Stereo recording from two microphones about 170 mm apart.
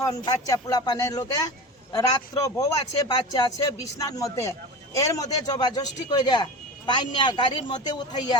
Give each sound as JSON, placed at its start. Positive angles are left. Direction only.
{"t": 0.0, "sound": "a man's voice", "side_deg": 20}